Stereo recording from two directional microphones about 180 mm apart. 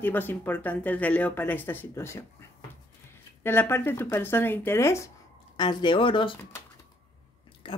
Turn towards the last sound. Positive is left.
turn(degrees=30)  # may be behind; listen again after turning